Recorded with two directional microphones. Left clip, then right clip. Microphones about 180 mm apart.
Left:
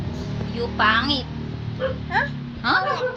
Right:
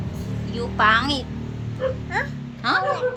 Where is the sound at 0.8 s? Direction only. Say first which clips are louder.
Right 1 dB; 35° right (ahead or behind).